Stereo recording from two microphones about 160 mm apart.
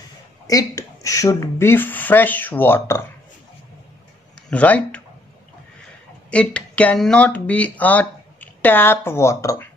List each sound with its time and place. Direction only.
0.5 s speech: 20° left (ahead or behind)
4.5 s speech: 10° left (ahead or behind)
6.3 s speech: 5° left (ahead or behind)